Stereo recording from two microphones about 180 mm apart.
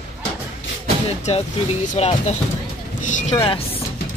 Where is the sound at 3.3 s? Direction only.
25° left (ahead or behind).